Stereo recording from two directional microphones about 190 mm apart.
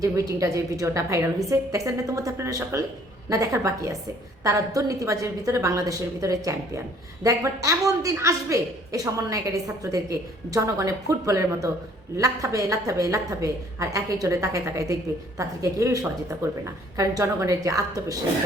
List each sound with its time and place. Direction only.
0.0 s a woman's voice: 15° right (ahead or behind)